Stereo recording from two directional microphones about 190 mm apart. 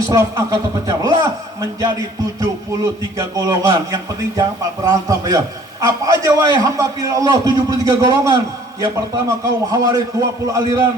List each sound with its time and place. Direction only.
0.1 s a man's voice: 15° right (ahead or behind)